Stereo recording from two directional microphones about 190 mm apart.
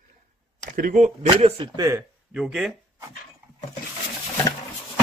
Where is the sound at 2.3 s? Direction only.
5° right (ahead or behind).